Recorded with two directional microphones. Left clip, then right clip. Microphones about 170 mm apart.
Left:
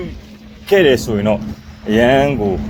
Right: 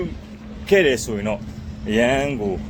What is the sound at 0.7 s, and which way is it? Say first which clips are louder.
Speech: left 5 dB; 10° right (ahead or behind).